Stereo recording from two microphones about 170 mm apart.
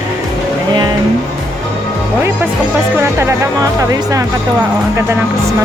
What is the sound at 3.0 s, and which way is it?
Speech, 15° right (ahead or behind).